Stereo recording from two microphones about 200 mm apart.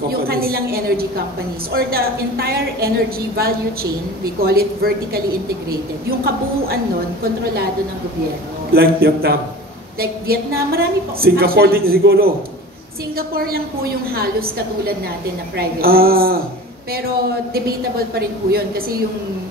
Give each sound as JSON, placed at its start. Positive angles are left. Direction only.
{"t": 0.1, "sound": "a woman's voice", "side_deg": -50}
{"t": 8.7, "sound": "a woman's voice", "side_deg": -50}
{"t": 17.6, "sound": "a woman's voice", "side_deg": -50}